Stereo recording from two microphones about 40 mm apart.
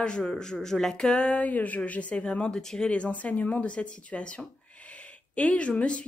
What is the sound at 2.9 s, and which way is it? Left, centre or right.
Speech, left.